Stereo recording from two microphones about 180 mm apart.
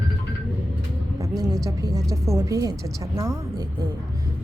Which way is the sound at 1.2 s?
20° right (ahead or behind).